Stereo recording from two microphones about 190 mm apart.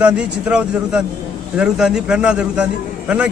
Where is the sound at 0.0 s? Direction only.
5° right (ahead or behind).